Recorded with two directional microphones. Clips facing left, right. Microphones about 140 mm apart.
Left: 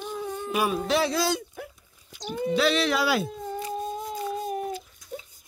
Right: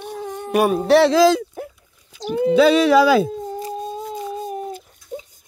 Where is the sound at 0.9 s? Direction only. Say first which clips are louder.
Right 15 dB; 80° right.